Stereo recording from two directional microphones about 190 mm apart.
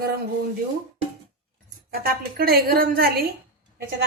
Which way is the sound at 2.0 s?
55° right (ahead or behind).